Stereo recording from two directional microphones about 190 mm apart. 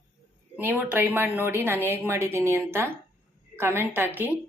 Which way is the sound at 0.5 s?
10° right (ahead or behind).